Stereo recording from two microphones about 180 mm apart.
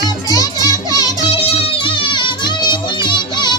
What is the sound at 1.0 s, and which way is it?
Music, 30° left (ahead or behind).